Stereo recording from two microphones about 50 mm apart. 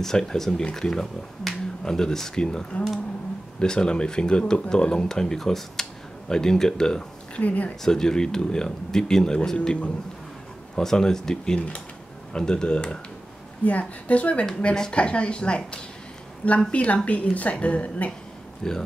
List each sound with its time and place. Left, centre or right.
0.0 s speech: centre
3.6 s speech: centre
7.3 s speech: left
7.8 s speech: centre
10.8 s speech: centre
13.7 s a woman's voice: left
18.6 s speech: centre